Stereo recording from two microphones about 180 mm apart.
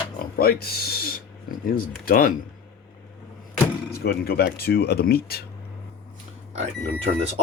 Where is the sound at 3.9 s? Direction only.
60° left (ahead or behind).